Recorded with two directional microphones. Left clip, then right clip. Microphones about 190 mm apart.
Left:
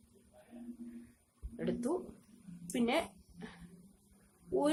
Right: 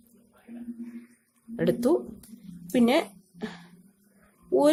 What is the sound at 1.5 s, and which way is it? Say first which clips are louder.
A woman's voice: right 13 dB; 50° right (ahead or behind).